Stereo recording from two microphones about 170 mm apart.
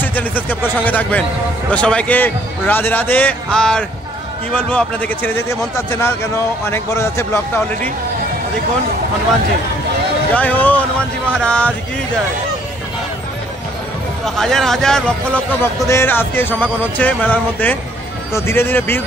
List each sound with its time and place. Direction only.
0.0 s a man's voice: 10° left (ahead or behind)
10.3 s a man's voice: 10° left (ahead or behind)
14.2 s a man's voice: centre (ahead or behind)